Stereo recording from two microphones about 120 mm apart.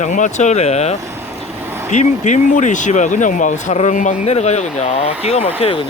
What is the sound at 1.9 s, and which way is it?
Speech, 80° left.